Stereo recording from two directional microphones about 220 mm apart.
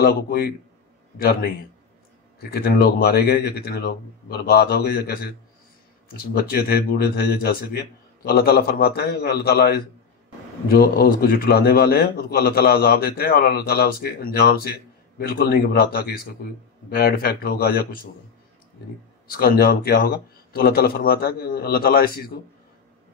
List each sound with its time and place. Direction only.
0.0 s a man's voice: 45° left (ahead or behind)
2.5 s a man's voice: 45° left (ahead or behind)
19.2 s a man's voice: 45° left (ahead or behind)